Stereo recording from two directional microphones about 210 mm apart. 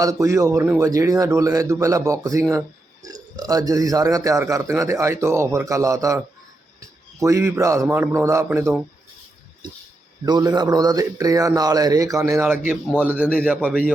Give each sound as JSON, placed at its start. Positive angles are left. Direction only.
{"t": 0.0, "sound": "a man's voice", "side_deg": -15}
{"t": 10.2, "sound": "a man's voice", "side_deg": -20}